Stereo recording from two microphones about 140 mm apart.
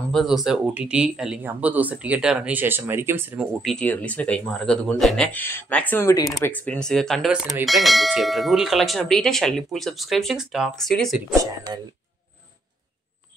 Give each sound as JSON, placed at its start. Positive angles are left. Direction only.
{"t": 0.1, "sound": "speech", "side_deg": 0}
{"t": 3.6, "sound": "speech", "side_deg": 5}
{"t": 6.5, "sound": "bell", "side_deg": 10}